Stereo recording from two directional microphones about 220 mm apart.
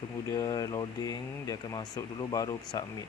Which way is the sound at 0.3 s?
15° left (ahead or behind).